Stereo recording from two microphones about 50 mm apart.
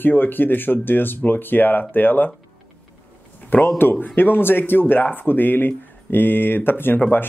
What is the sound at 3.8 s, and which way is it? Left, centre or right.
Speech, left.